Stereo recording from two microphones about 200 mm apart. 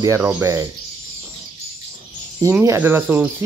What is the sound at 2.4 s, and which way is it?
Speech, 15° right (ahead or behind).